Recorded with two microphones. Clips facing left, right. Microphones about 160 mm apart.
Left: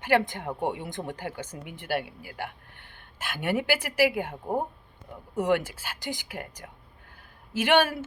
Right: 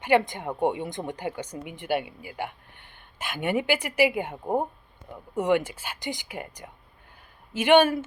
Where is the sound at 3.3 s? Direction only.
Centre (ahead or behind).